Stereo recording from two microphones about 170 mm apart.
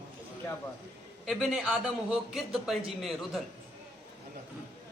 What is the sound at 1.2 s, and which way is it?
Speech, centre (ahead or behind).